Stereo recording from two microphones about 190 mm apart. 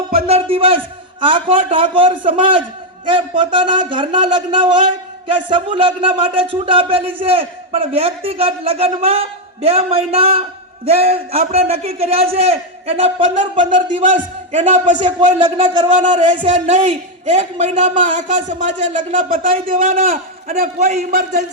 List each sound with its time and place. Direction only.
0.1 s a sound: 30° right (ahead or behind)
1.2 s a man's voice: 30° right (ahead or behind)
14.2 s a man's voice: 40° right (ahead or behind)
16.2 s a man's voice: 25° right (ahead or behind); by 19.4 s 40° right (ahead or behind)
19.4 s a man's voice: 30° right (ahead or behind)